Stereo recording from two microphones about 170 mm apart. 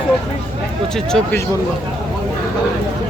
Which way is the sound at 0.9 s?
5° left (ahead or behind).